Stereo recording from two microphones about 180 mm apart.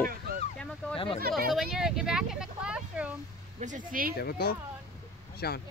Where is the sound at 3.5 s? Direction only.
45° right (ahead or behind).